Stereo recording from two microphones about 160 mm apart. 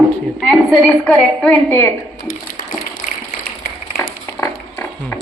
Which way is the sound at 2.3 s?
60° left (ahead or behind).